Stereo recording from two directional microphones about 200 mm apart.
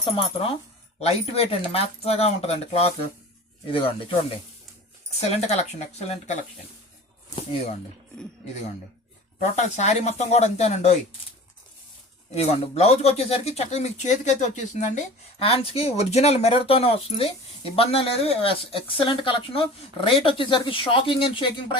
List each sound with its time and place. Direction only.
0.0 s speech: 25° left (ahead or behind)
5.5 s speech: 35° left (ahead or behind)
9.4 s speech: 35° left (ahead or behind)
12.3 s speech: 30° left (ahead or behind)